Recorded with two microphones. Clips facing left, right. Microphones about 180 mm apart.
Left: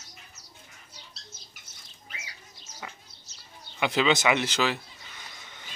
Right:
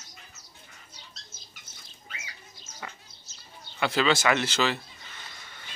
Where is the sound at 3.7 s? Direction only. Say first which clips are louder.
Even; 15° left (ahead or behind).